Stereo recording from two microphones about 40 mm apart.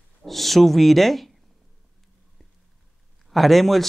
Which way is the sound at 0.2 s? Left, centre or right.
Centre.